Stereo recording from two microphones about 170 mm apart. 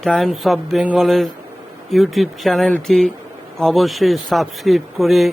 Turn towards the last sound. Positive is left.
turn(degrees=0)  # may be behind; listen again after turning